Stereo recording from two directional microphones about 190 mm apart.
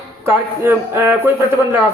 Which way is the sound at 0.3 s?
15° right (ahead or behind).